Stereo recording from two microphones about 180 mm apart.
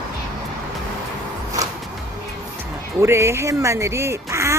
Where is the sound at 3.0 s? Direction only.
15° right (ahead or behind).